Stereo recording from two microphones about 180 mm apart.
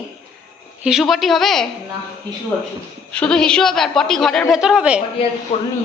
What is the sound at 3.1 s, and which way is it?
Speech, 5° left (ahead or behind).